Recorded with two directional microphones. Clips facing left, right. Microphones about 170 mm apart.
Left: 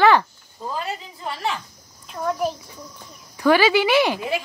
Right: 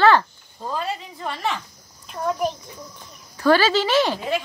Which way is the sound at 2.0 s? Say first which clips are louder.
Even; centre (ahead or behind).